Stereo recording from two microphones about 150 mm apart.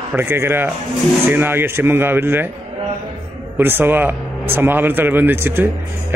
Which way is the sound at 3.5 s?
15° right (ahead or behind).